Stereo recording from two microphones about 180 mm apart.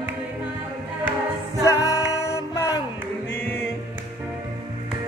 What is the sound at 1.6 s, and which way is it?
Music, 15° left (ahead or behind).